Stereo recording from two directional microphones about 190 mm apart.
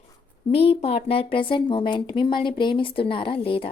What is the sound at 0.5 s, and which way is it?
Speech, 30° left (ahead or behind).